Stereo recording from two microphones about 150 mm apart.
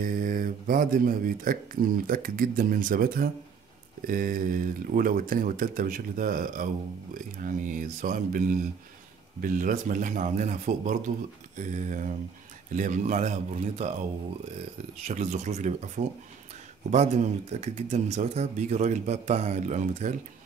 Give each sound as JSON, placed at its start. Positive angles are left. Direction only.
{"t": 0.0, "sound": "speech", "side_deg": -70}
{"t": 15.0, "sound": "speech", "side_deg": -55}